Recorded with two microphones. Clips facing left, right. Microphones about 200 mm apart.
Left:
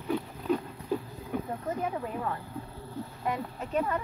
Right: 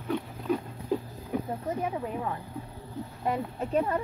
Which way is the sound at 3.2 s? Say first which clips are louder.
Right 4 dB; 30° right (ahead or behind).